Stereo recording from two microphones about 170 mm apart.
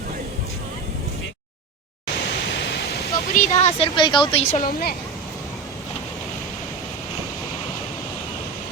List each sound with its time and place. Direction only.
3.1 s speech: 45° left (ahead or behind)
4.6 s a woman's voice: 60° left (ahead or behind)